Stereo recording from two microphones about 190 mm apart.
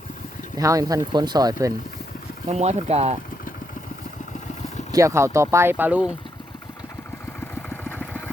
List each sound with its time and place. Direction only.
0.5 s speech: 15° right (ahead or behind)
2.5 s speech: 35° right (ahead or behind)
4.9 s speech: 15° right (ahead or behind)